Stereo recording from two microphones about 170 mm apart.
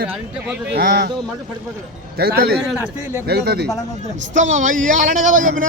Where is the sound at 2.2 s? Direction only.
65° right (ahead or behind).